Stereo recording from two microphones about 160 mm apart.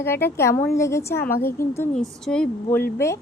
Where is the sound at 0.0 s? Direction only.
15° left (ahead or behind).